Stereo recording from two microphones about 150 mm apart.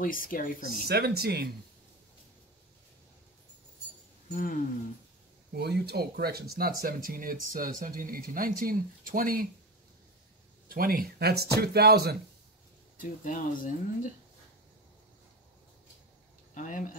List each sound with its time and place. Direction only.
0.0 s speech: 70° left (ahead or behind)
0.7 s speech: 90° right
4.3 s a sound: 65° left (ahead or behind)
5.5 s speech: 90° right; by 9.5 s 70° right (ahead or behind)
10.7 s speech: 80° right
12.9 s speech: 65° left (ahead or behind)
16.5 s speech: 60° left (ahead or behind)